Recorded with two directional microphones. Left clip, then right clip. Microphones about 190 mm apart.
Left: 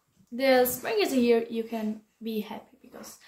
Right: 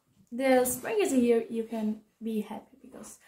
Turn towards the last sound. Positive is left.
turn(degrees=5)  # may be behind; listen again after turning